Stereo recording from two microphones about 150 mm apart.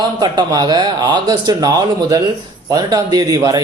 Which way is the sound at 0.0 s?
30° right (ahead or behind).